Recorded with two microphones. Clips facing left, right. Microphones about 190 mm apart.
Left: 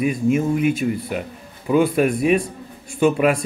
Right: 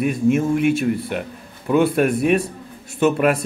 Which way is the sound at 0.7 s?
5° right (ahead or behind).